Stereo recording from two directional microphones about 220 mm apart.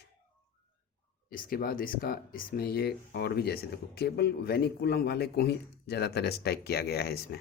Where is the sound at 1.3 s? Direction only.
40° left (ahead or behind).